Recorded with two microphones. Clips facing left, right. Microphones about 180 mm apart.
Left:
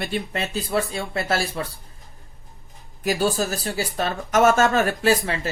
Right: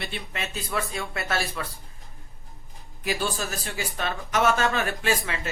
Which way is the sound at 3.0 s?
40° left (ahead or behind).